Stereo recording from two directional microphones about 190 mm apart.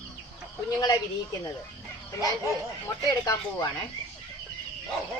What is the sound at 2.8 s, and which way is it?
Speech, 15° left (ahead or behind).